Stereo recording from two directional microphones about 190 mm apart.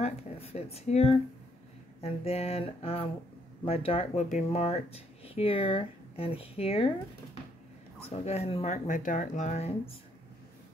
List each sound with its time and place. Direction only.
0.0 s speech: 35° left (ahead or behind)
8.1 s speech: 35° left (ahead or behind)